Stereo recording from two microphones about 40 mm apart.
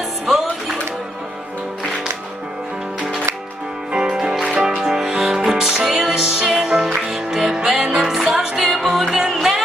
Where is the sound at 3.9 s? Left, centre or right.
Centre.